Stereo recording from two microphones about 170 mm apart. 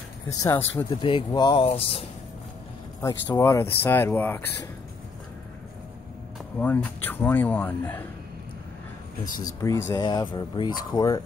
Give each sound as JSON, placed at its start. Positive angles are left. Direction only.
{"t": 0.3, "sound": "speech", "side_deg": 20}
{"t": 0.8, "sound": "speech", "side_deg": 25}
{"t": 3.0, "sound": "speech", "side_deg": 20}
{"t": 6.6, "sound": "speech", "side_deg": 10}
{"t": 9.4, "sound": "speech", "side_deg": 20}